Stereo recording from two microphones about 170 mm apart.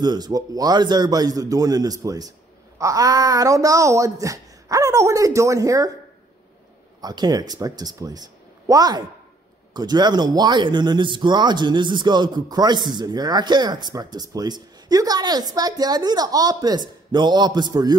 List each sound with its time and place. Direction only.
0.0 s speech: 25° right (ahead or behind)
7.0 s speech: 25° right (ahead or behind)